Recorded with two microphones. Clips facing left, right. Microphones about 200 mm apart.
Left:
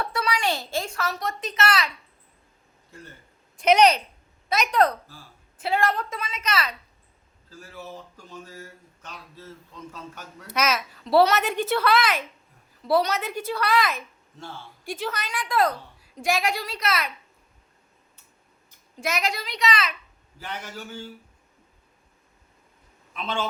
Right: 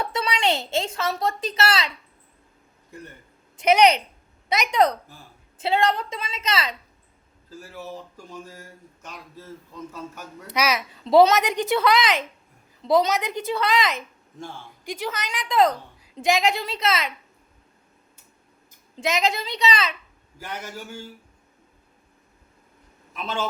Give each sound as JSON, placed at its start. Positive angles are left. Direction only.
{"t": 0.0, "sound": "a woman's voice", "side_deg": -20}
{"t": 3.6, "sound": "a woman's voice", "side_deg": -10}
{"t": 7.5, "sound": "a woman's voice", "side_deg": -10}
{"t": 18.9, "sound": "a woman's voice", "side_deg": -20}
{"t": 20.4, "sound": "a woman's voice", "side_deg": -10}
{"t": 23.1, "sound": "a woman's voice", "side_deg": -5}